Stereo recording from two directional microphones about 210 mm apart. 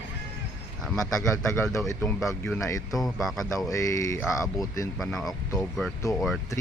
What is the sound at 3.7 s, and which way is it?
Speech, 15° left (ahead or behind).